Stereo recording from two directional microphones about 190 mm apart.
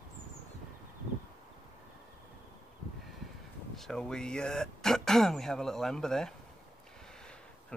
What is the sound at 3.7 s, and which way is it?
Speech, centre (ahead or behind).